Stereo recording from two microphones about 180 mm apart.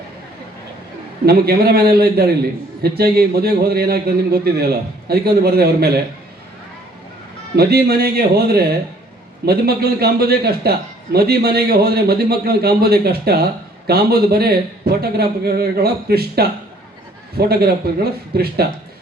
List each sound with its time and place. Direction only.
1.2 s a man's voice: 60° right (ahead or behind)
7.5 s a man's voice: 60° right (ahead or behind)